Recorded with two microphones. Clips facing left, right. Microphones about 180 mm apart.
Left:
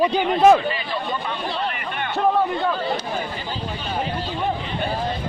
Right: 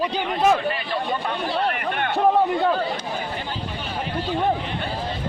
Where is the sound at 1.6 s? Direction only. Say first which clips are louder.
Right 3 dB; 55° right (ahead or behind).